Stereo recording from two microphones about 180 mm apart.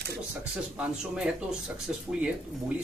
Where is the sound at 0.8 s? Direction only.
5° right (ahead or behind).